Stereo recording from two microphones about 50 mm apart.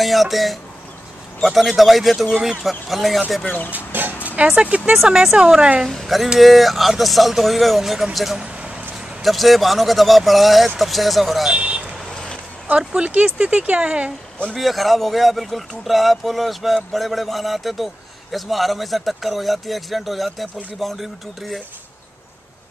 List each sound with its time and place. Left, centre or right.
0.0 s speech: centre
3.4 s speech: left
4.6 s speech: right
5.9 s speech: centre
8.4 s a sound: centre
9.2 s speech: centre
11.5 s speech: right
14.5 s speech: centre